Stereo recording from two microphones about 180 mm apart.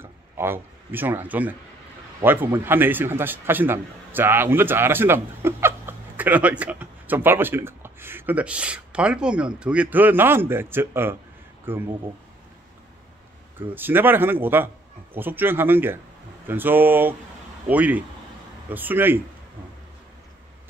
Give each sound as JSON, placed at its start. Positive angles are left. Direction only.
{"t": 0.0, "sound": "a man's voice", "side_deg": -10}
{"t": 13.6, "sound": "a man's voice", "side_deg": -10}